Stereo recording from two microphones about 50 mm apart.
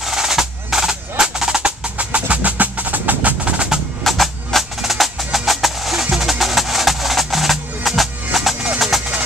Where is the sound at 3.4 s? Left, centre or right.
Right.